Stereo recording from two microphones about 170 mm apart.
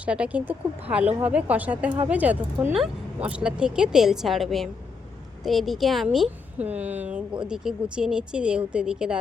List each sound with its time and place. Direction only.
0.0 s a woman's voice: 5° right (ahead or behind)